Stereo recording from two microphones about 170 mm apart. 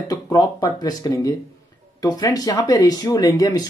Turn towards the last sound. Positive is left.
turn(degrees=20)  # may be behind; listen again after turning